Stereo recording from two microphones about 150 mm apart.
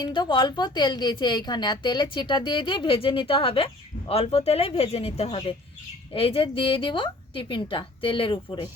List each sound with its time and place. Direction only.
0.0 s a woman's voice: 30° left (ahead or behind)